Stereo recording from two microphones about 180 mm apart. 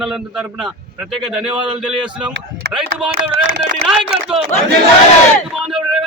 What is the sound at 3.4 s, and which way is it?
Speech, 90° right.